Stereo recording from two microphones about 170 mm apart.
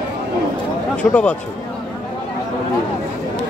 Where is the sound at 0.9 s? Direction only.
5° left (ahead or behind).